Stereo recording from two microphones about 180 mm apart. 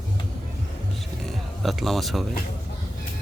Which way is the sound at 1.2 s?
Centre (ahead or behind).